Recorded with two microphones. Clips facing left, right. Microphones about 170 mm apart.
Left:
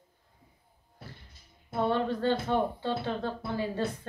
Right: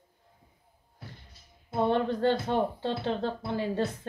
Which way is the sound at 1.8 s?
20° right (ahead or behind).